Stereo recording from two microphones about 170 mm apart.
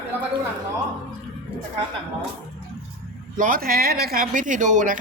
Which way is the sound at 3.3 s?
55° right (ahead or behind).